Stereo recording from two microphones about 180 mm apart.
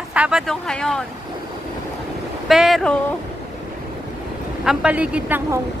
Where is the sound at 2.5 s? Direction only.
Centre (ahead or behind).